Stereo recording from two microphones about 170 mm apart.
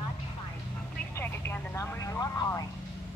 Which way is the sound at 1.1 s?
15° left (ahead or behind).